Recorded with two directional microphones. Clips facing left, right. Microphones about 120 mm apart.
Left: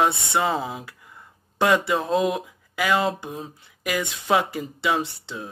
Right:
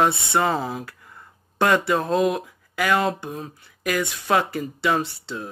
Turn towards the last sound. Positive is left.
turn(degrees=15)  # may be behind; listen again after turning